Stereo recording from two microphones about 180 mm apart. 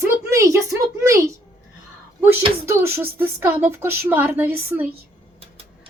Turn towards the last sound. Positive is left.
turn(degrees=-10)  # may be behind; listen again after turning